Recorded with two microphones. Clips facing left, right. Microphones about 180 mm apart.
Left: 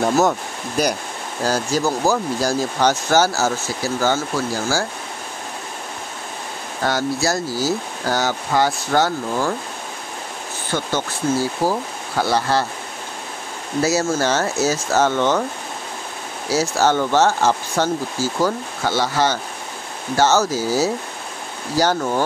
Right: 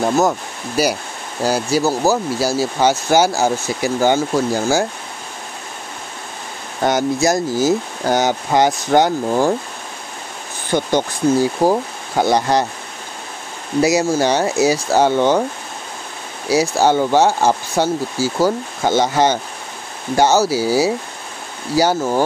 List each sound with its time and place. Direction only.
0.0 s speech: centre (ahead or behind)
6.8 s speech: 20° right (ahead or behind)
10.7 s speech: 15° right (ahead or behind)
13.7 s speech: 15° right (ahead or behind)
16.4 s speech: 15° right (ahead or behind)